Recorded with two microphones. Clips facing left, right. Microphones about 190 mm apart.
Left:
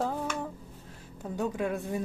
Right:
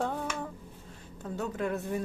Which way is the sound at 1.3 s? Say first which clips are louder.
Left 2 dB; 15° left (ahead or behind).